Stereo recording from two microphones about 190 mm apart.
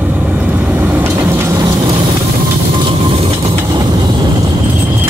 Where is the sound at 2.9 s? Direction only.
25° right (ahead or behind).